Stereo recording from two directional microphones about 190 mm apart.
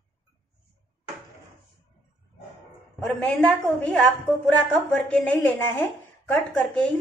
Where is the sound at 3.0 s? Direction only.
5° left (ahead or behind).